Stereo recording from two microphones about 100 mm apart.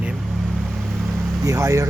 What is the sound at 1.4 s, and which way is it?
Speech, 30° right (ahead or behind).